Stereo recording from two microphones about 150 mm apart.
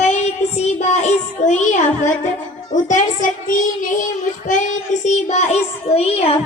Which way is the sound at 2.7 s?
55° left (ahead or behind).